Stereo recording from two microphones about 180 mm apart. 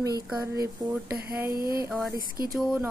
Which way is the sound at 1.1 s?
60° right (ahead or behind).